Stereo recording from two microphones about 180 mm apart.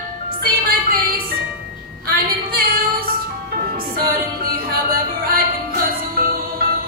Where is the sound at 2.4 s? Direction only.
55° right (ahead or behind).